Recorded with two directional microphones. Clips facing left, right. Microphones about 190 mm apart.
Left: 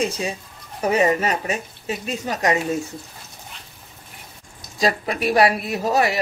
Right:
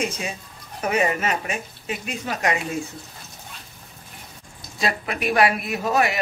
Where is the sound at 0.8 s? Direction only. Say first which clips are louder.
Left 4 dB; 35° left (ahead or behind).